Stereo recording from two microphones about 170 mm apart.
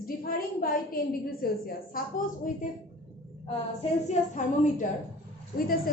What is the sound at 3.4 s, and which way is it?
A woman's voice, 40° left (ahead or behind).